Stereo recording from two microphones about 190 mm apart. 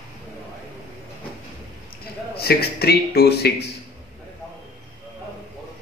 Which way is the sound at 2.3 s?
55° left (ahead or behind).